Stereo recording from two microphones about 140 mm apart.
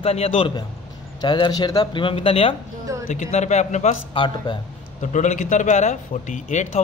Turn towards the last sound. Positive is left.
turn(degrees=60)  # may be behind; listen again after turning